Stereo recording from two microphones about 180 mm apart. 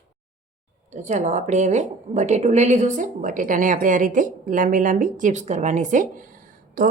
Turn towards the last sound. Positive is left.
turn(degrees=-50)  # may be behind; listen again after turning